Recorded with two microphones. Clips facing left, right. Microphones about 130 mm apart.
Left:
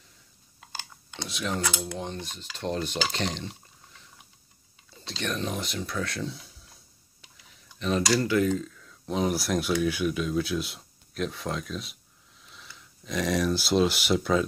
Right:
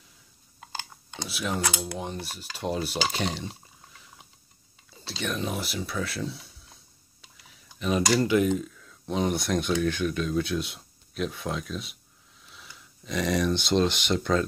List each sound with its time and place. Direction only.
1.2 s speech: 5° right (ahead or behind)
2.0 s cutlery: 5° right (ahead or behind)
5.0 s speech: 5° right (ahead or behind)
8.2 s cutlery: 20° right (ahead or behind)
8.6 s speech: centre (ahead or behind)